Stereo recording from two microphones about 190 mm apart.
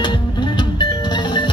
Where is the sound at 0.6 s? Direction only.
25° left (ahead or behind).